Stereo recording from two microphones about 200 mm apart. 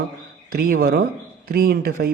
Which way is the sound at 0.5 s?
50° right (ahead or behind).